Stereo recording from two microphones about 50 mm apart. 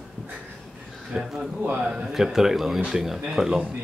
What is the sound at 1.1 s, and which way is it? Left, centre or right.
Speech, centre.